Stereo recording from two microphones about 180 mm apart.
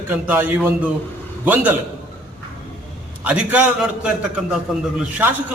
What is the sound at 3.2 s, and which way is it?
Speech, 10° right (ahead or behind).